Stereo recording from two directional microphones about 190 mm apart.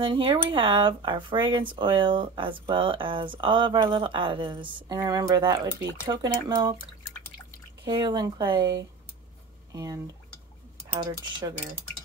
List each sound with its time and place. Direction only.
0.0 s speech: 25° right (ahead or behind)
7.8 s speech: 20° right (ahead or behind)
9.7 s drip: 20° right (ahead or behind)
11.0 s speech: 20° right (ahead or behind)